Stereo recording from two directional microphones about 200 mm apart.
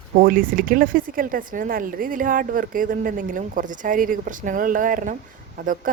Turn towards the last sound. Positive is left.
turn(degrees=-40)  # may be behind; listen again after turning